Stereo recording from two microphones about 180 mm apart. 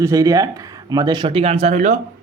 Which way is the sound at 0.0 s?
15° right (ahead or behind).